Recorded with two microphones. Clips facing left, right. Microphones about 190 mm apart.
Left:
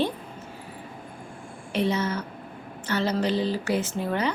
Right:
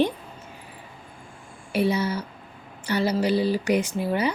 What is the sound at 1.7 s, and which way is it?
A woman's voice, 10° right (ahead or behind).